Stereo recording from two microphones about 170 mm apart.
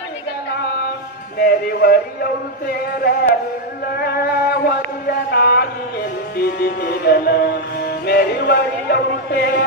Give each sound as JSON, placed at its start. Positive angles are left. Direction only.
{"t": 1.4, "sound": "music", "side_deg": 65}
{"t": 3.9, "sound": "chant", "side_deg": 60}
{"t": 6.3, "sound": "music", "side_deg": 70}